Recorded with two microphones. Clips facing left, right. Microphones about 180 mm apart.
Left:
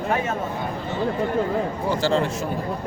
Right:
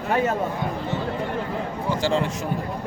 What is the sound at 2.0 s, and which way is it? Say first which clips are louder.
Speech: left 1 dB; 15° right (ahead or behind).